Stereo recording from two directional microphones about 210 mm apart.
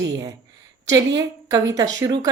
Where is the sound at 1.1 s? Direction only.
20° right (ahead or behind).